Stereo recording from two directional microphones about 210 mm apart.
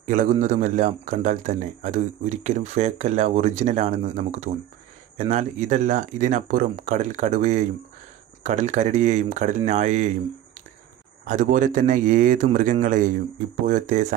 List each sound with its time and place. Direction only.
0.0 s a man's voice: 35° right (ahead or behind)
11.2 s a man's voice: 40° right (ahead or behind)